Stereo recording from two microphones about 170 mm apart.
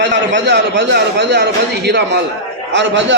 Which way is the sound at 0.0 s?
90° right.